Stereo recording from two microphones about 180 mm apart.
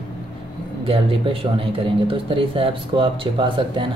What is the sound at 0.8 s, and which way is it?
Speech, 30° right (ahead or behind).